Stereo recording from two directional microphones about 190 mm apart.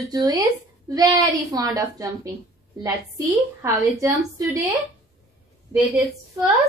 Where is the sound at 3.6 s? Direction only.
15° right (ahead or behind).